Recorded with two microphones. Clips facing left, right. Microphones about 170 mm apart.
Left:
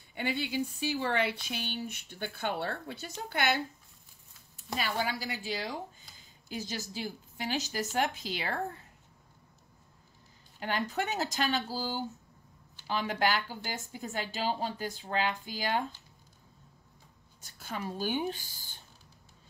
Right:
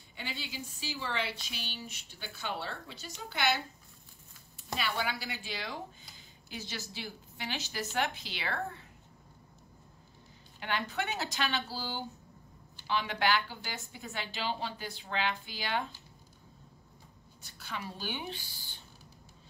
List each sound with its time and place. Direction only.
0.1 s speech: 55° left (ahead or behind)
4.7 s a woman's voice: 40° left (ahead or behind)
10.6 s a woman's voice: 40° left (ahead or behind)
17.4 s a woman's voice: 45° left (ahead or behind)